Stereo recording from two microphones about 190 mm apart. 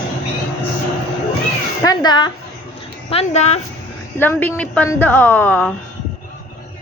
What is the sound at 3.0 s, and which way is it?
Speech, 35° left (ahead or behind).